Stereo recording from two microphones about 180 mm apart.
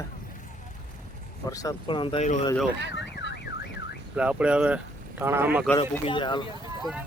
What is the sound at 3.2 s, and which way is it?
Car alarm, 65° left (ahead or behind).